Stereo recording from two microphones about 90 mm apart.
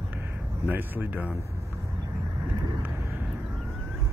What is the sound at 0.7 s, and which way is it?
Speech, 20° right (ahead or behind).